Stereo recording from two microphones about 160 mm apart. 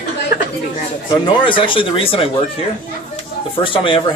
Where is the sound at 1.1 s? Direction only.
30° left (ahead or behind).